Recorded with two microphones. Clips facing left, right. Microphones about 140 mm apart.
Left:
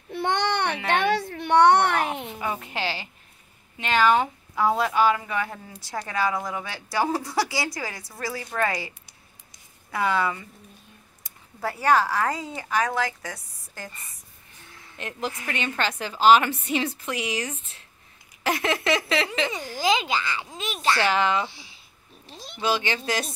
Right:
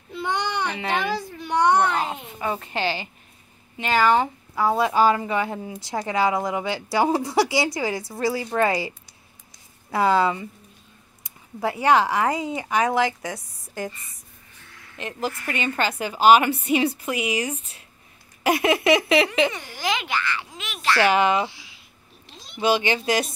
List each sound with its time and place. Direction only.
0.1 s child singing: 65° left (ahead or behind)
0.8 s a child's voice: 70° left (ahead or behind)
2.4 s a woman's voice: 5° left (ahead or behind)
4.9 s a woman's voice: 35° right (ahead or behind)
11.6 s a woman's voice: 20° right (ahead or behind)
15.0 s a woman's voice: centre (ahead or behind)
19.6 s a child's voice: 35° left (ahead or behind)
20.5 s speech: 35° left (ahead or behind)
21.0 s a woman's voice: 15° right (ahead or behind)
22.6 s a woman's voice: 15° right (ahead or behind)